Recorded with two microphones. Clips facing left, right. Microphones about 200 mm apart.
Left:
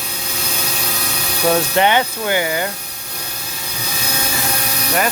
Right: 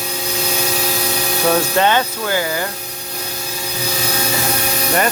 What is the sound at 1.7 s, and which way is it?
Speech, 20° left (ahead or behind).